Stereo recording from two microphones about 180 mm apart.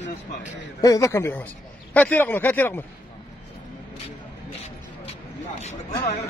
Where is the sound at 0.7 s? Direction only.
20° left (ahead or behind).